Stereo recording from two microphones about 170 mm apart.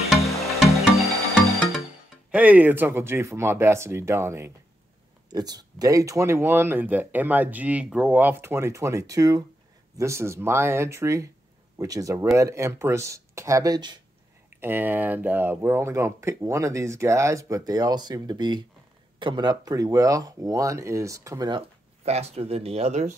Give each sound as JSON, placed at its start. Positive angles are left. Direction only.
{"t": 0.7, "sound": "music", "side_deg": 0}
{"t": 2.3, "sound": "speech", "side_deg": -10}
{"t": 14.6, "sound": "speech", "side_deg": -10}
{"t": 22.0, "sound": "speech", "side_deg": -40}